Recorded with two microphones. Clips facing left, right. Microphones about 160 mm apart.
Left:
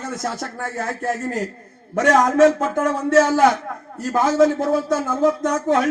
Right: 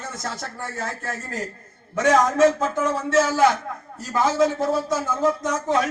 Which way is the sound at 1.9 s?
60° left (ahead or behind).